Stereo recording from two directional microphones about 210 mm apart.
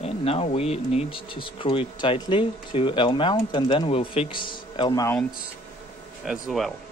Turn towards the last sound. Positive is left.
turn(degrees=0)  # may be behind; listen again after turning